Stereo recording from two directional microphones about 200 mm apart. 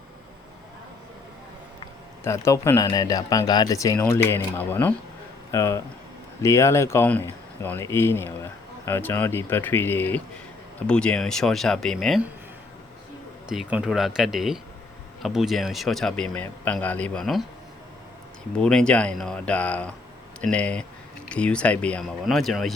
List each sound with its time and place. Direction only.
2.2 s speech: 15° left (ahead or behind)
13.5 s speech: 5° right (ahead or behind)
18.6 s speech: 5° left (ahead or behind)